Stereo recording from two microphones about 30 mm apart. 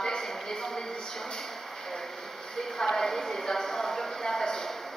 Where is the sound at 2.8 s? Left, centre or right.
Centre.